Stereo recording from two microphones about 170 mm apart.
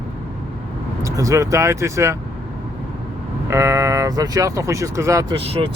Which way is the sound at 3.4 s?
15° right (ahead or behind).